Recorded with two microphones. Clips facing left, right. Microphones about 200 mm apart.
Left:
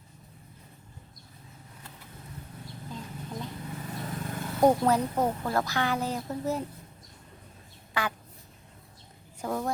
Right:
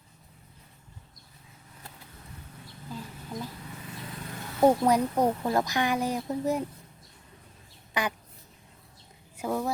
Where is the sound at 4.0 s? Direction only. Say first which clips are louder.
Left 5 dB; 50° left (ahead or behind).